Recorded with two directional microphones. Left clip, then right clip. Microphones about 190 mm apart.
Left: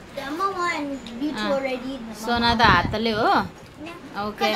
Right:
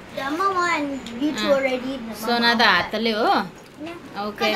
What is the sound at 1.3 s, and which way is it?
A woman's voice, 5° left (ahead or behind).